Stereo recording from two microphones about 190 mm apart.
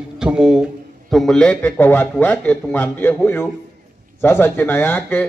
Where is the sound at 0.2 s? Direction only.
5° right (ahead or behind).